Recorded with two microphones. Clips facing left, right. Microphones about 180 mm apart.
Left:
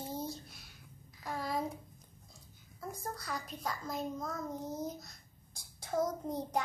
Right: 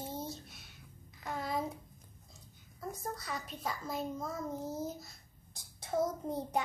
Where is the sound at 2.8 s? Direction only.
Centre (ahead or behind).